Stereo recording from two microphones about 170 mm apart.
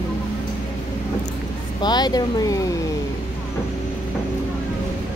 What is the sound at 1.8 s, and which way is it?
Speech, 25° left (ahead or behind).